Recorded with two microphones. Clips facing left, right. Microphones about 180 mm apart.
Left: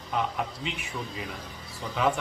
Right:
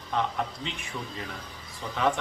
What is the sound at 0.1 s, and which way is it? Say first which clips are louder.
Speech: even; 5° left (ahead or behind).